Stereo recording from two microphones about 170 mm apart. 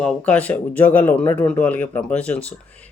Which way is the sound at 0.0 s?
5° left (ahead or behind).